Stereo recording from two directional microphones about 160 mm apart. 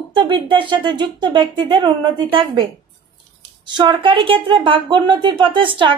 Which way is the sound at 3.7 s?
30° right (ahead or behind).